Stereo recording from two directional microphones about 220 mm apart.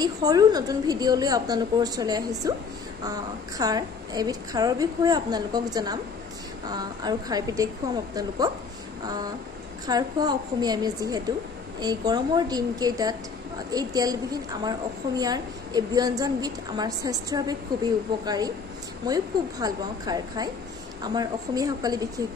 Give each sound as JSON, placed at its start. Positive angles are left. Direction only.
{"t": 0.0, "sound": "a woman's voice", "side_deg": -15}
{"t": 9.8, "sound": "a woman's voice", "side_deg": -20}